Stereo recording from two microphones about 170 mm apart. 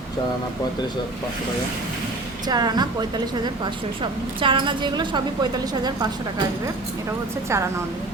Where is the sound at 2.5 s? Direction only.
25° right (ahead or behind).